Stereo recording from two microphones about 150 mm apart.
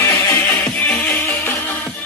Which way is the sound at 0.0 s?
20° left (ahead or behind).